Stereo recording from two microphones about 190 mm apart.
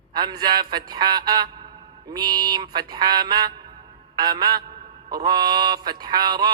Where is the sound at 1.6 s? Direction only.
20° right (ahead or behind).